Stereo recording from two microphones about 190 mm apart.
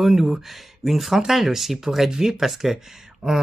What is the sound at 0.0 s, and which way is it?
Speech, centre (ahead or behind).